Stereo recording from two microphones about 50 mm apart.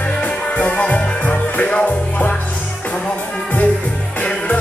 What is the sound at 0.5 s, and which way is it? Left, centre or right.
Music, left.